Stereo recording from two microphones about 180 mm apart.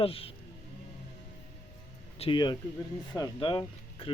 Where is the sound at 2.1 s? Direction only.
30° left (ahead or behind).